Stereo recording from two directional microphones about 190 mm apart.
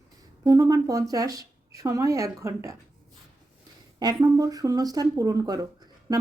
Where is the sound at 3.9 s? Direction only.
20° right (ahead or behind).